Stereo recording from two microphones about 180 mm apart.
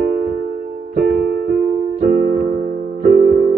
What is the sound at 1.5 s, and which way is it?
Keyboard, 55° right (ahead or behind).